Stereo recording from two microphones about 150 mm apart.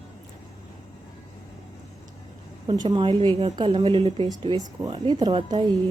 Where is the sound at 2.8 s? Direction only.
30° right (ahead or behind).